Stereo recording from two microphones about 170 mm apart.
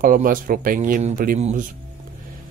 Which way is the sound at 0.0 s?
55° right (ahead or behind).